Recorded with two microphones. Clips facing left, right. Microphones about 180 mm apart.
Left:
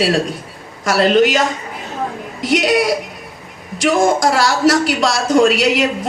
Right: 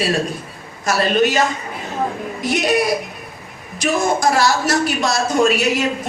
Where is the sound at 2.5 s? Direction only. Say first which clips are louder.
Left 3 dB; 90° left.